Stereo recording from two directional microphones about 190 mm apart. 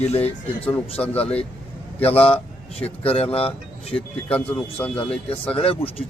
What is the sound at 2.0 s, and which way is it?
Speech, 30° left (ahead or behind).